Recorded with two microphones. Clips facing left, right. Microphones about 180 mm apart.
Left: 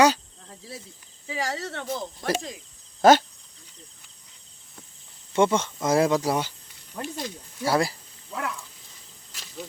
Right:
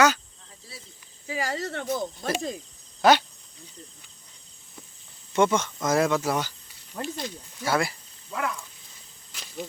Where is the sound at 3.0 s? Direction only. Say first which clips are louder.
Left 3 dB; 45° left (ahead or behind).